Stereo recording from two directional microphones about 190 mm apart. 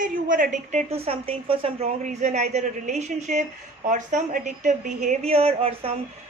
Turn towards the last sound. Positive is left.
turn(degrees=-30)  # may be behind; listen again after turning